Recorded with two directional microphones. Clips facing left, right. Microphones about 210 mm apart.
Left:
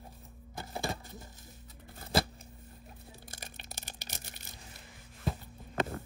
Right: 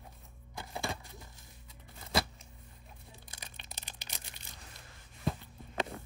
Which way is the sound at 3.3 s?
50° left (ahead or behind).